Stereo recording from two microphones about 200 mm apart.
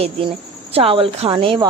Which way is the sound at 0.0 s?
30° right (ahead or behind).